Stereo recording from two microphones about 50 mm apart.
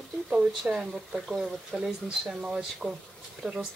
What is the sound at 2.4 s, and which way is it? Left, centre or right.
Speech, centre.